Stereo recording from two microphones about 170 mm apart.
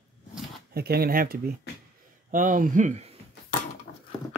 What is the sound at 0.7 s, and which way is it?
Speech, 65° right (ahead or behind).